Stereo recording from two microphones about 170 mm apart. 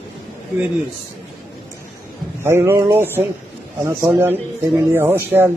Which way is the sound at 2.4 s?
15° right (ahead or behind).